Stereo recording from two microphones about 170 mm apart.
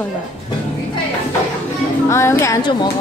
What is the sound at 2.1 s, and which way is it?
Speech, 15° left (ahead or behind).